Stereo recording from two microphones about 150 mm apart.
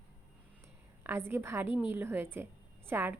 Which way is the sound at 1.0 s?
15° right (ahead or behind).